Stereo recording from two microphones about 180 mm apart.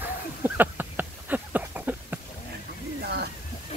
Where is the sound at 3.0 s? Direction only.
65° right (ahead or behind).